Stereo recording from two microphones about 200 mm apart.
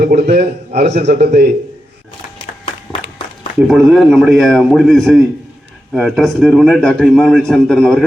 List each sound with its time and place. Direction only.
0.0 s a man's voice: 50° right (ahead or behind)
3.7 s a man's voice: centre (ahead or behind)